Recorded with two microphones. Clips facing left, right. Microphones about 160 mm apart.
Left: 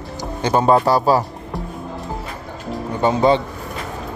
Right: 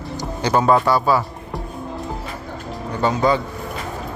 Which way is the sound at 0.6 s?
35° left (ahead or behind).